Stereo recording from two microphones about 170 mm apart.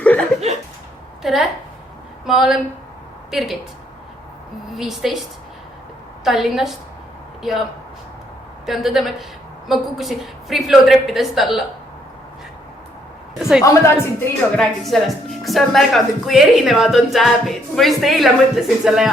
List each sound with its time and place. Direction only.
0.0 s a sound: 5° left (ahead or behind)
1.2 s a woman's voice: centre (ahead or behind)
4.7 s a woman's voice: centre (ahead or behind)
6.2 s a woman's voice: centre (ahead or behind)
8.6 s a woman's voice: centre (ahead or behind)
13.4 s a woman's voice: centre (ahead or behind)
13.7 s a woman's voice: 15° left (ahead or behind)
14.5 s a woman's voice: 5° left (ahead or behind)